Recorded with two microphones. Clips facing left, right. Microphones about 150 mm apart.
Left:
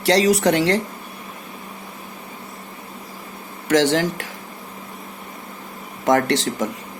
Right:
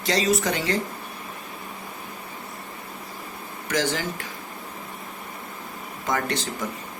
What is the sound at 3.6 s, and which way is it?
Speech, 75° left (ahead or behind).